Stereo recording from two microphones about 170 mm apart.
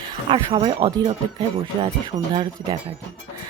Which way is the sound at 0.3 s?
30° right (ahead or behind).